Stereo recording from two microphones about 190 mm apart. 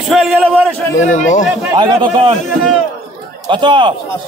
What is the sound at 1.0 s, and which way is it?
Speech, 40° left (ahead or behind).